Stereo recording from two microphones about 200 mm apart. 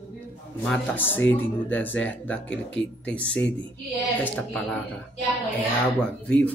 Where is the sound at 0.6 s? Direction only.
5° left (ahead or behind).